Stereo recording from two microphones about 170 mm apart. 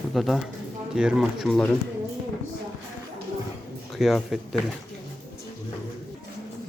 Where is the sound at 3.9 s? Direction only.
Centre (ahead or behind).